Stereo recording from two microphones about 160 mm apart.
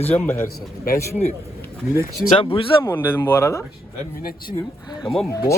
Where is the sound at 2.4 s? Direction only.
35° left (ahead or behind).